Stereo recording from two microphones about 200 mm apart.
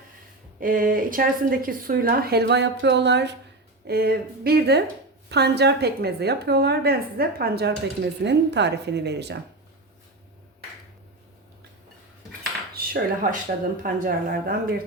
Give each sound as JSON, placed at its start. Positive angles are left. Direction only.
{"t": 0.6, "sound": "a woman's voice", "side_deg": -45}
{"t": 12.7, "sound": "dishes", "side_deg": -50}
{"t": 13.8, "sound": "a woman's voice", "side_deg": -45}